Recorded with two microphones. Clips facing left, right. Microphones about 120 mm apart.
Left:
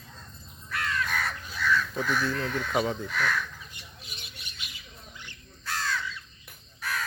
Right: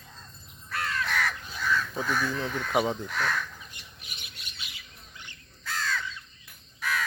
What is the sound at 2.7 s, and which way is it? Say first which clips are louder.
Speech: right 2 dB; 10° right (ahead or behind).